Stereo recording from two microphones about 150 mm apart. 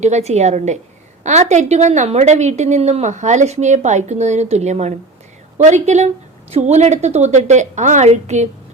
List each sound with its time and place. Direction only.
0.0 s a woman's voice: 45° right (ahead or behind)